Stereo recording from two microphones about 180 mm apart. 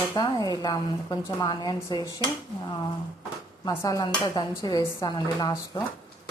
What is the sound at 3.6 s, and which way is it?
Speech, 20° left (ahead or behind).